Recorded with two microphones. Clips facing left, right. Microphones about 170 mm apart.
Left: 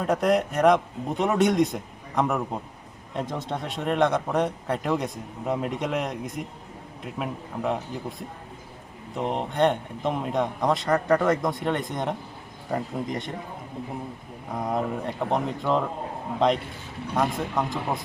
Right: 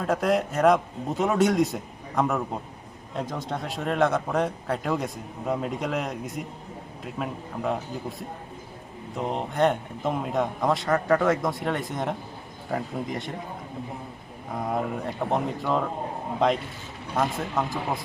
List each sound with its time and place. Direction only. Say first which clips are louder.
0.1 s a man's voice: left 1 dB; centre (ahead or behind)
9.1 s a man's voice: left 1 dB; centre (ahead or behind)
14.5 s a man's voice: left 1 dB; centre (ahead or behind)
17.2 s a man's voice: left 1 dB; 5° right (ahead or behind)